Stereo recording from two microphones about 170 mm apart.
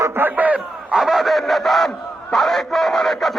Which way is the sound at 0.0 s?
15° right (ahead or behind).